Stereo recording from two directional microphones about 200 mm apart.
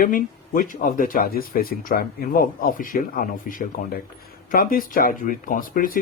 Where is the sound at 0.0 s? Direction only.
45° left (ahead or behind).